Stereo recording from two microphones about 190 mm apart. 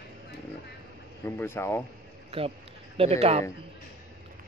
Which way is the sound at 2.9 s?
35° right (ahead or behind).